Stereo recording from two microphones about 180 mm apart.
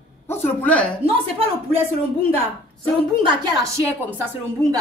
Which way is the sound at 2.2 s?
35° right (ahead or behind).